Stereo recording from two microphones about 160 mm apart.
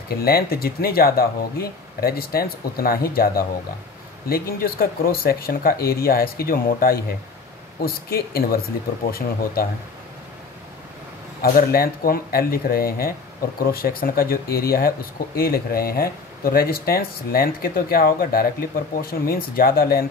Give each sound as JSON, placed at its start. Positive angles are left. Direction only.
{"t": 0.2, "sound": "speech", "side_deg": 75}
{"t": 11.4, "sound": "speech", "side_deg": 65}